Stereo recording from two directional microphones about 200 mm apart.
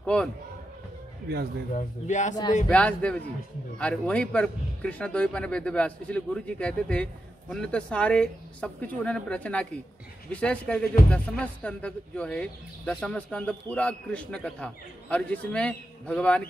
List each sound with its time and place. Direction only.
0.0 s speech: 5° left (ahead or behind)
1.8 s speech: 35° left (ahead or behind)
2.7 s speech: 5° left (ahead or behind)